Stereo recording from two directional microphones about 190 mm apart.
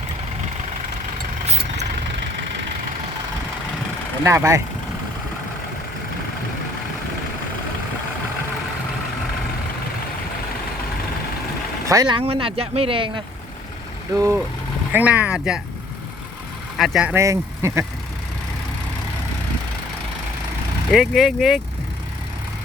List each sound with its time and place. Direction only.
4.2 s speech: 15° right (ahead or behind)
11.9 s speech: 20° right (ahead or behind)
14.2 s speech: 15° right (ahead or behind)
16.7 s speech: centre (ahead or behind)
20.9 s speech: centre (ahead or behind)